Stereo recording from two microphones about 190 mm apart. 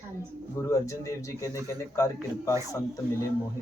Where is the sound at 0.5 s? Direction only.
15° left (ahead or behind).